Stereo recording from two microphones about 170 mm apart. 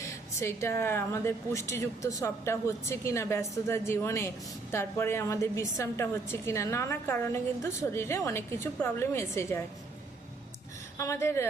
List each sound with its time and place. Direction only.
0.0 s a woman's voice: 15° left (ahead or behind)
10.9 s a woman's voice: 15° left (ahead or behind)